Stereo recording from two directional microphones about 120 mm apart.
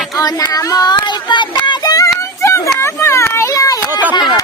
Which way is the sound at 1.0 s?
40° left (ahead or behind).